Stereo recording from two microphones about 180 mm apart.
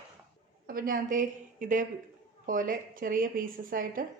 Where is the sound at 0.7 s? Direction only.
50° right (ahead or behind).